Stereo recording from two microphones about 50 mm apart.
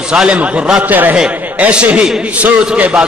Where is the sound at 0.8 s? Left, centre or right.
Right.